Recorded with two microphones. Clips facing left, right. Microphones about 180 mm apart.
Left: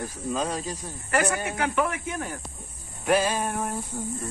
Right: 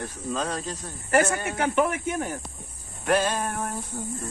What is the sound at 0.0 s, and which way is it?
Speech, 10° left (ahead or behind).